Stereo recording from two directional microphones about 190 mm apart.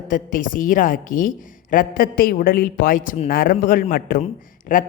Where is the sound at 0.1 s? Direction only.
45° left (ahead or behind).